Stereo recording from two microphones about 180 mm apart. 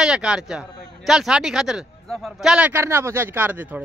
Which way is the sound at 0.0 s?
5° right (ahead or behind).